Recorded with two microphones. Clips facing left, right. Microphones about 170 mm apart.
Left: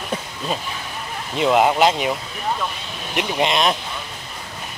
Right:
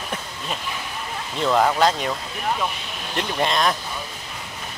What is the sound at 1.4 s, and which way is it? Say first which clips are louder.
Speech: left 3 dB; 15° left (ahead or behind).